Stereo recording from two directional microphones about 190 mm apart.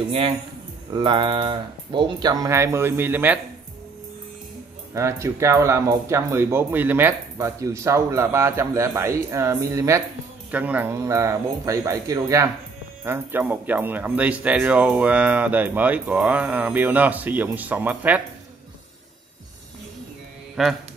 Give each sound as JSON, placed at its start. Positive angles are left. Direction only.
{"t": 0.9, "sound": "speech", "side_deg": -25}
{"t": 4.9, "sound": "speech", "side_deg": -15}
{"t": 20.6, "sound": "mantra", "side_deg": 0}